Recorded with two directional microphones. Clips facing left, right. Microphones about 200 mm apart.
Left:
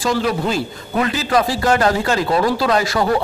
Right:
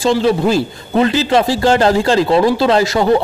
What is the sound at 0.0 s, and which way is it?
A man's voice, 30° right (ahead or behind).